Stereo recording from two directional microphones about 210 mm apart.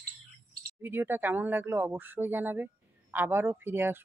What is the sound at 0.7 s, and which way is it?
Speech, 10° right (ahead or behind).